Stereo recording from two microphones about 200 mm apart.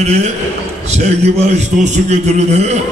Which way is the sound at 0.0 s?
35° right (ahead or behind).